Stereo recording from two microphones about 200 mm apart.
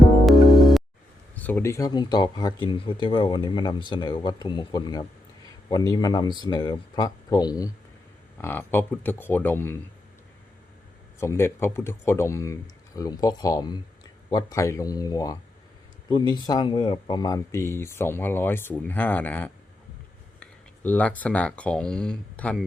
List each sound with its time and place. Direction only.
1.4 s speech: 10° left (ahead or behind)
11.2 s speech: 10° left (ahead or behind)